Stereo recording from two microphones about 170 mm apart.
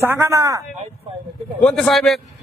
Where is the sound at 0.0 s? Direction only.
15° right (ahead or behind).